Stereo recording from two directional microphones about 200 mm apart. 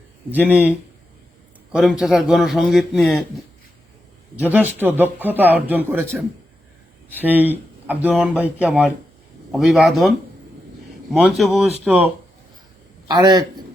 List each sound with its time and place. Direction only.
0.3 s speech: 10° right (ahead or behind)
1.7 s a man's voice: centre (ahead or behind)
4.4 s a man's voice: 10° right (ahead or behind)
13.1 s a man's voice: 20° right (ahead or behind)